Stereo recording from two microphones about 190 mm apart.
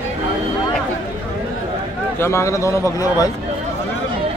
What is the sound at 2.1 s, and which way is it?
A man's voice, 15° left (ahead or behind).